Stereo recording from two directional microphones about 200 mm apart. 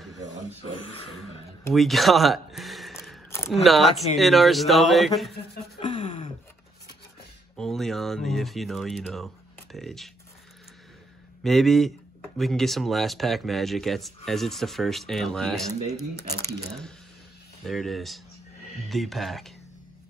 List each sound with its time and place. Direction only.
1.7 s speech: centre (ahead or behind)
5.8 s a sound: 30° left (ahead or behind)
7.5 s speech: centre (ahead or behind)
11.4 s speech: centre (ahead or behind)
17.6 s speech: centre (ahead or behind)